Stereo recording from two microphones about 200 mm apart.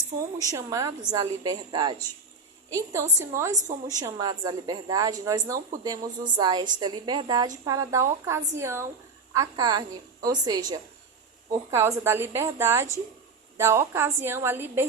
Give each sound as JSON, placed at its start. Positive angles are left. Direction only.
{"t": 0.5, "sound": "a woman's voice", "side_deg": -15}